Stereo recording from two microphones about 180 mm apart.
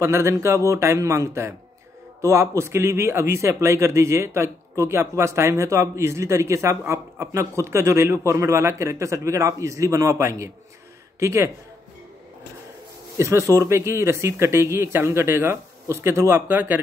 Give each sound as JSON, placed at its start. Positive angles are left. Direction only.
{"t": 0.0, "sound": "a man's voice", "side_deg": -15}
{"t": 13.2, "sound": "a man's voice", "side_deg": -15}